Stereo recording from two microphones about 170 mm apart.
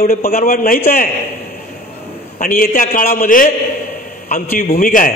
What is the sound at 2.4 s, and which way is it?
A man's voice, 55° left (ahead or behind).